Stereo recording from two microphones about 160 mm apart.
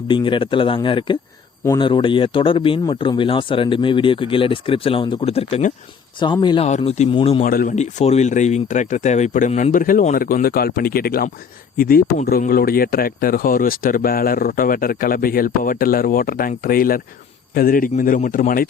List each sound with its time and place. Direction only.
0.1 s speech: 30° left (ahead or behind)
6.1 s speech: 30° left (ahead or behind)
6.7 s speech: 45° left (ahead or behind)
7.4 s speech: 60° left (ahead or behind)
9.7 s speech: 60° left (ahead or behind)